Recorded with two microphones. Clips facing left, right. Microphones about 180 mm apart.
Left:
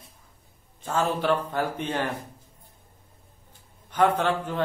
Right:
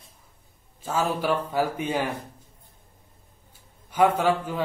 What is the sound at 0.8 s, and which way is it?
A man's voice, 10° right (ahead or behind).